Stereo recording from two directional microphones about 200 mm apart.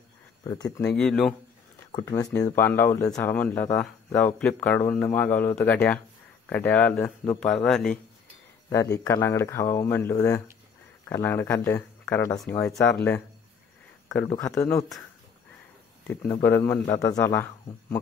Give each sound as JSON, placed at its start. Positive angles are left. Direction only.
{"t": 0.4, "sound": "speech", "side_deg": 20}
{"t": 0.7, "sound": "a man's voice", "side_deg": 5}
{"t": 1.9, "sound": "a man's voice", "side_deg": 20}
{"t": 8.9, "sound": "speech", "side_deg": 15}
{"t": 14.3, "sound": "speech", "side_deg": 15}
{"t": 16.1, "sound": "speech", "side_deg": 10}